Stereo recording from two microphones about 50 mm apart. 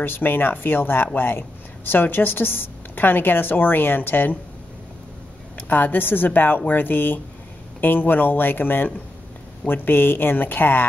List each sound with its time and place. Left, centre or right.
0.0 s a woman's voice: left
5.6 s a woman's voice: left